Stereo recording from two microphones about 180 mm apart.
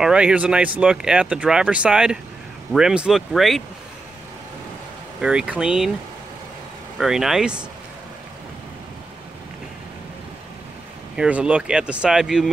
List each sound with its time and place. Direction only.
0.0 s speech: 5° right (ahead or behind)
5.2 s speech: 5° right (ahead or behind)
7.0 s speech: centre (ahead or behind)
11.1 s speech: 5° right (ahead or behind)